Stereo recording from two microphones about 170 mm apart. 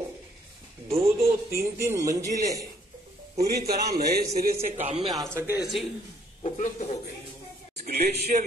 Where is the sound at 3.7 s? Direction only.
65° right (ahead or behind).